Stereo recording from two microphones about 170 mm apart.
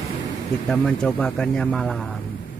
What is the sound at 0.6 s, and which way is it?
Speech, 5° left (ahead or behind).